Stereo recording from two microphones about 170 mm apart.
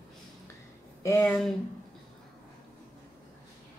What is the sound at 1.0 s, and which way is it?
Speech, 15° left (ahead or behind).